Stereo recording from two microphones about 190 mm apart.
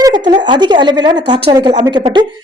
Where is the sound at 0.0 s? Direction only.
20° right (ahead or behind).